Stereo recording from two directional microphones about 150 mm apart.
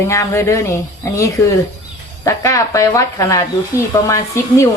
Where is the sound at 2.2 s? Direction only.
20° left (ahead or behind).